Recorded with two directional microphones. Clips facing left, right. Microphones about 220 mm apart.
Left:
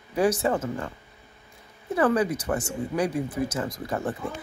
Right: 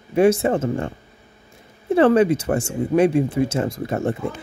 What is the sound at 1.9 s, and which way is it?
Speech, 25° right (ahead or behind).